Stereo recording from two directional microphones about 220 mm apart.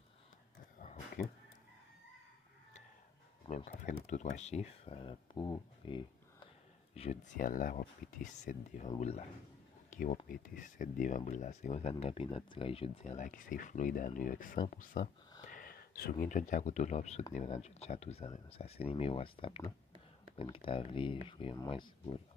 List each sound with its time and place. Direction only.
0.7 s a sound: 35° left (ahead or behind)
3.4 s speech: 35° left (ahead or behind)
9.8 s speech: 35° left (ahead or behind)